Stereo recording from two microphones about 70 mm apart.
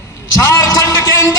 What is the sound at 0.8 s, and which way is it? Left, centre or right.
Music, left.